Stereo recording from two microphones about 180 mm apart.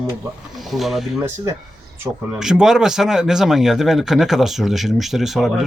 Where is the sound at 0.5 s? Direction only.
Centre (ahead or behind).